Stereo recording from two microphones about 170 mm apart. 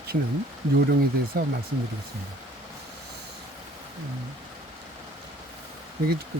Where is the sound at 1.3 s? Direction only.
60° right (ahead or behind).